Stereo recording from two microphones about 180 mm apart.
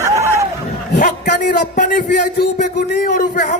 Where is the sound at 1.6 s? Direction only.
50° left (ahead or behind); by 3.1 s 65° left (ahead or behind).